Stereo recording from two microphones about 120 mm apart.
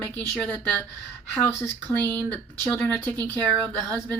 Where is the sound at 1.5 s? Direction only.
15° left (ahead or behind).